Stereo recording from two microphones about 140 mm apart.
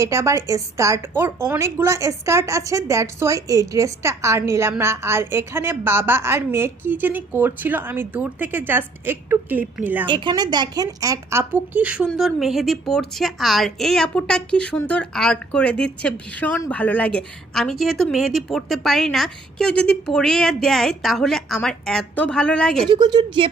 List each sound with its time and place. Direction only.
0.0 s a woman's voice: 20° right (ahead or behind)
10.1 s a woman's voice: 35° right (ahead or behind); by 22.9 s 5° left (ahead or behind)
22.9 s a woman's voice: 30° right (ahead or behind)